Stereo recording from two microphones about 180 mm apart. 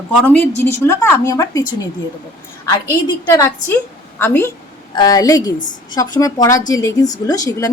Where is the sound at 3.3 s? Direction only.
15° left (ahead or behind).